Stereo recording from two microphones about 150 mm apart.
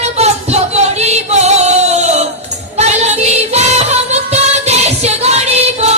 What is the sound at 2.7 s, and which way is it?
Music, 50° right (ahead or behind).